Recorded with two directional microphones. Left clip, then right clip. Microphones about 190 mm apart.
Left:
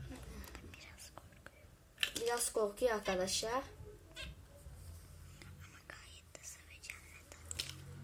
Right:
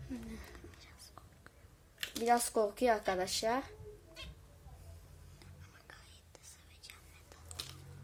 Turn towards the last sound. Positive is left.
turn(degrees=-10)  # may be behind; listen again after turning